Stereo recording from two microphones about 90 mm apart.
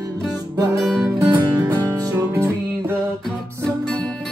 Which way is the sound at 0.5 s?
45° right (ahead or behind).